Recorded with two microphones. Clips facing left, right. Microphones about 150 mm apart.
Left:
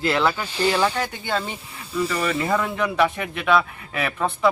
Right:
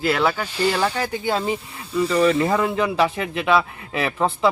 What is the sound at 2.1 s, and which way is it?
Speech, 25° right (ahead or behind).